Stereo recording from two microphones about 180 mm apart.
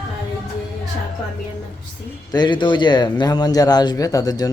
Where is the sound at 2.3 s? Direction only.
25° left (ahead or behind).